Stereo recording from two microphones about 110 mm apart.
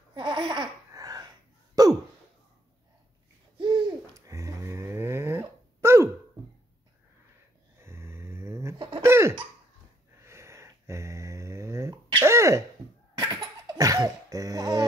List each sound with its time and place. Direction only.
0.1 s laughter: 45° right (ahead or behind)
1.8 s throat clearing: 35° right (ahead or behind)
3.5 s hoot: 45° right (ahead or behind)
4.3 s a sound: 30° right (ahead or behind)
7.8 s dog: 25° right (ahead or behind)
9.0 s a sound: 25° right (ahead or behind)
12.2 s throat clearing: 25° right (ahead or behind)
13.2 s laughter: 35° right (ahead or behind)